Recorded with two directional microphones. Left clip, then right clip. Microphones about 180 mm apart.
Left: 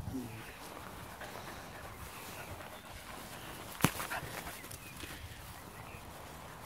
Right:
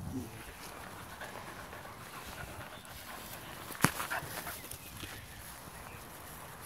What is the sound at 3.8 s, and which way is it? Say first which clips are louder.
Dog: right 2 dB; centre (ahead or behind).